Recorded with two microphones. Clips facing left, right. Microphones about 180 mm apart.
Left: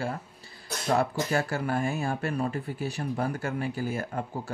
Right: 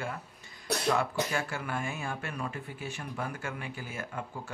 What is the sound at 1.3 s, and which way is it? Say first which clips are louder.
Speech: left 6 dB; 40° left (ahead or behind).